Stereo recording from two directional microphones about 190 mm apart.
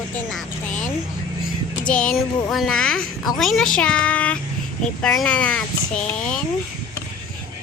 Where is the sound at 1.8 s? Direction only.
5° left (ahead or behind).